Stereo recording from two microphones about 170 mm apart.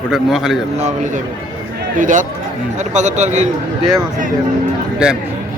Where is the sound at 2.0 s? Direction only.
50° right (ahead or behind).